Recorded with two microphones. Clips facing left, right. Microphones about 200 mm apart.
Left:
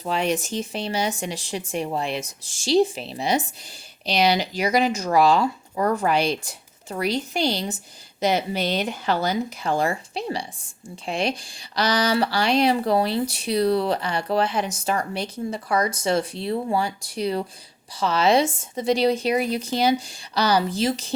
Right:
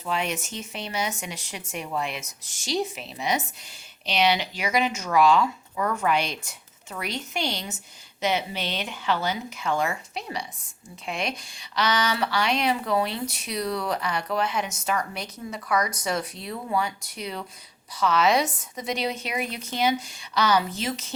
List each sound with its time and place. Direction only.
0.0 s speech: 35° left (ahead or behind)